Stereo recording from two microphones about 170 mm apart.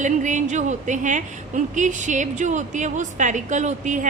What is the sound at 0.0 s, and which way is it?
A woman's voice, 45° right (ahead or behind).